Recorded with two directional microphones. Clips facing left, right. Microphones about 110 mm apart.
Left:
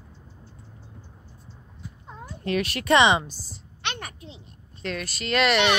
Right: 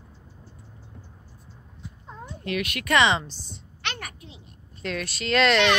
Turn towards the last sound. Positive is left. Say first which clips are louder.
# right 1 dB
turn(degrees=5)  # may be behind; listen again after turning